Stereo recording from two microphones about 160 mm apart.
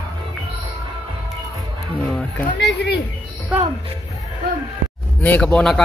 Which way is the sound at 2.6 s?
90° left.